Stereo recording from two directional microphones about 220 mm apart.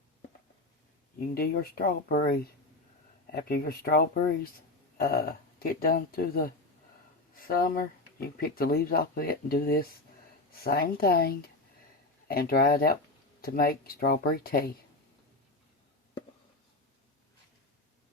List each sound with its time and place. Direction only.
1.3 s speech: 40° left (ahead or behind)